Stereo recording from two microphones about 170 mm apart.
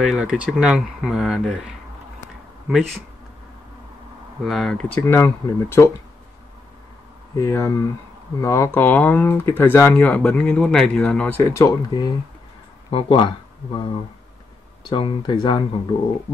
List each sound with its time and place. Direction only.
0.0 s speech: 5° right (ahead or behind)
4.5 s speech: centre (ahead or behind)
4.9 s speech: 10° left (ahead or behind)
7.3 s speech: 15° left (ahead or behind)
14.9 s speech: 30° left (ahead or behind)